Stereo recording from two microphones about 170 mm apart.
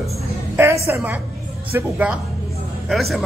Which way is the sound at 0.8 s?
15° right (ahead or behind).